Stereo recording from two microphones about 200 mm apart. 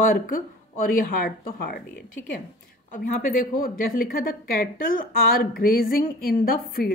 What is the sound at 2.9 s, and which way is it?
Speech, 45° left (ahead or behind).